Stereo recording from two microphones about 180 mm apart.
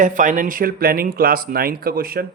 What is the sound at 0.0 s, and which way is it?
Speech, 45° right (ahead or behind).